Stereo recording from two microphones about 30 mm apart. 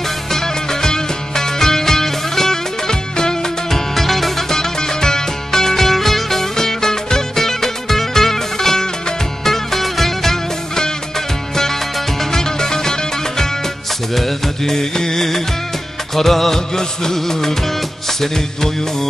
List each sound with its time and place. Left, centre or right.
0.3 s music: centre
3.9 s music: centre
4.6 s music: centre
12.2 s music: centre
14.1 s music: centre
14.6 s music: centre
16.2 s music of bollywood: centre
16.5 s music: centre